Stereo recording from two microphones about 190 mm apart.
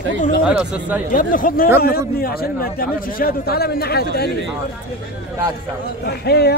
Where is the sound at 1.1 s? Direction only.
45° left (ahead or behind).